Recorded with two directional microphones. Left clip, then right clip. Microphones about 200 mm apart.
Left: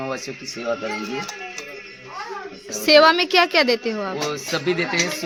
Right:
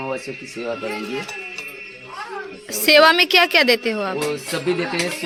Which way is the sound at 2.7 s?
Centre (ahead or behind).